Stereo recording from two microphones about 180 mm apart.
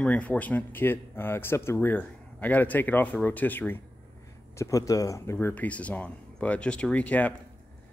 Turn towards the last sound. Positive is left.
turn(degrees=10)  # may be behind; listen again after turning